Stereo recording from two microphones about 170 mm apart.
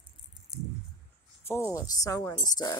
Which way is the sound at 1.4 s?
15° left (ahead or behind).